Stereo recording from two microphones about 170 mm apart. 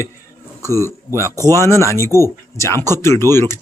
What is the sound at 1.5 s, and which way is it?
Speech, 15° left (ahead or behind).